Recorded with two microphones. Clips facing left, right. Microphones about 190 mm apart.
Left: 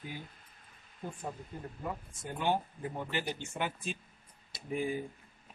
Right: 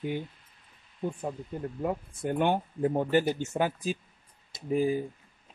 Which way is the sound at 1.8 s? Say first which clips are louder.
Right 10 dB; 60° right (ahead or behind).